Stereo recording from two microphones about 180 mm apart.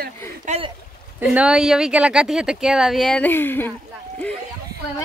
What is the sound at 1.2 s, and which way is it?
Speech, 5° right (ahead or behind).